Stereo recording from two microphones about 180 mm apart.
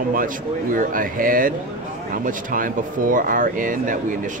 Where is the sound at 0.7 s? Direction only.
50° right (ahead or behind).